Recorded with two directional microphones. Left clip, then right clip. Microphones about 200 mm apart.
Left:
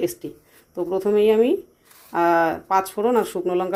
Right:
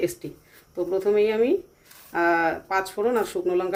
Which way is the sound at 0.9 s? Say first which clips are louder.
Left 4 dB; 30° left (ahead or behind).